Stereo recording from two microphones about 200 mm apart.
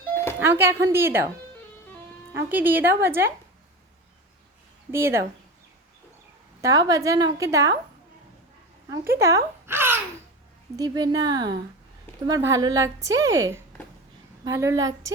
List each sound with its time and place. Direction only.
0.3 s a woman's voice: 10° right (ahead or behind)
2.3 s a woman's voice: 10° right (ahead or behind)
4.9 s a woman's voice: 10° right (ahead or behind)
6.6 s a woman's voice: 15° right (ahead or behind)
9.1 s a sound: 15° right (ahead or behind)
10.8 s a woman's voice: 20° right (ahead or behind)